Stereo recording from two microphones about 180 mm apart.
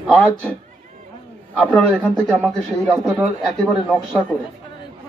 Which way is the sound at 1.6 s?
5° left (ahead or behind).